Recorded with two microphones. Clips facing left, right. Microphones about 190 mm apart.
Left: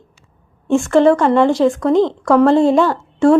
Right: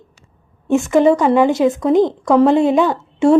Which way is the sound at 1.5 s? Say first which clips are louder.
Even; 20° right (ahead or behind).